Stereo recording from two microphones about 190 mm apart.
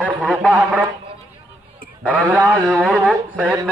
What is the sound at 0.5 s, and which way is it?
Speech, 10° right (ahead or behind).